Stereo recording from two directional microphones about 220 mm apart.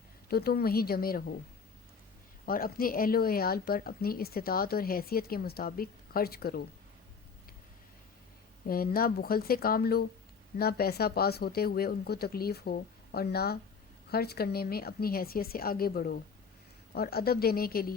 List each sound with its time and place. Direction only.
0.3 s speech: 45° left (ahead or behind)
2.5 s speech: 40° left (ahead or behind)
8.6 s speech: 40° left (ahead or behind)